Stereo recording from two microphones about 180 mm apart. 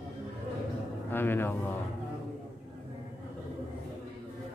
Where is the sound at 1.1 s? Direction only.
10° left (ahead or behind).